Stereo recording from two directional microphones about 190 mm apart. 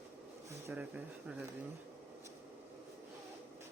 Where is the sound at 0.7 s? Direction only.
5° right (ahead or behind).